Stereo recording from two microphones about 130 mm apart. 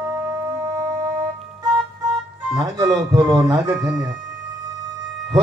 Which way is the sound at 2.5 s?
25° right (ahead or behind).